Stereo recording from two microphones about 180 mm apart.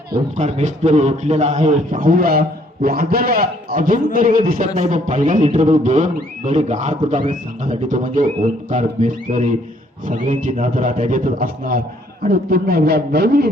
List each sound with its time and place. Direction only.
0.3 s a man's voice: 40° right (ahead or behind); by 13.5 s 60° right (ahead or behind)